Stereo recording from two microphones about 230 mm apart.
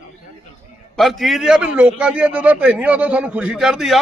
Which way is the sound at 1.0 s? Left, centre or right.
Centre.